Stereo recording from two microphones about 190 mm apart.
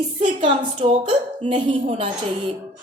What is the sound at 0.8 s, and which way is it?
A woman's voice, 35° right (ahead or behind).